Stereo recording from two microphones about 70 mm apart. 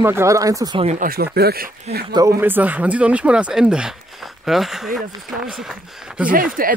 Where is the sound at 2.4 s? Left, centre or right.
Right; by 5.8 s centre.